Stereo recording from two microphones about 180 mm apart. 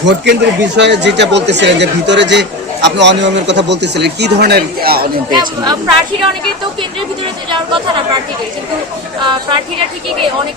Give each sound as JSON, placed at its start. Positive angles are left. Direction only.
{"t": 0.0, "sound": "speech", "side_deg": -75}
{"t": 5.3, "sound": "a woman's voice", "side_deg": -25}
{"t": 7.5, "sound": "a woman's voice", "side_deg": -25}
{"t": 9.2, "sound": "a woman's voice", "side_deg": -25}